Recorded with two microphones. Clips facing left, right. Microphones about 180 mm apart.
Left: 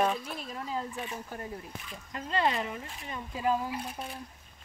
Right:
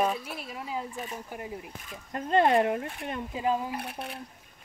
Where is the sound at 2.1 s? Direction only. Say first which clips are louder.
Right 7 dB; 50° right (ahead or behind).